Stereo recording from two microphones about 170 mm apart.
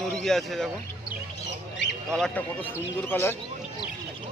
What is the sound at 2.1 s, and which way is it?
Speech, 5° left (ahead or behind).